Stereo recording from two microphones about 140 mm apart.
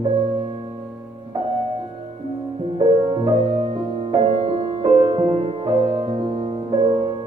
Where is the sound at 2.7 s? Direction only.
35° right (ahead or behind).